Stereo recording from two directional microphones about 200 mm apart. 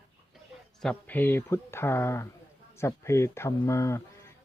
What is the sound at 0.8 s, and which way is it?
Speech, 10° left (ahead or behind).